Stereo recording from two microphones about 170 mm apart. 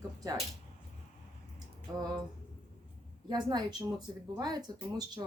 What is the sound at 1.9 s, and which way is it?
Speech, 20° right (ahead or behind).